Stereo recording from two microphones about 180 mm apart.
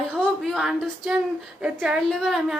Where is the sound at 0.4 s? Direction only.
Centre (ahead or behind).